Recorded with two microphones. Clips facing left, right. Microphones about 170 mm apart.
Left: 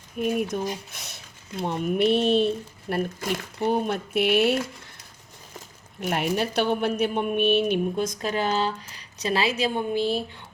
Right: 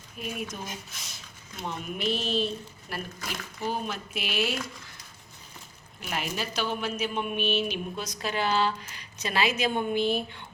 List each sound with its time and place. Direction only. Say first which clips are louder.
0.2 s speech: left 10 dB; 50° left (ahead or behind)
6.0 s speech: left 8 dB; 55° left (ahead or behind); by 10.2 s 35° left (ahead or behind)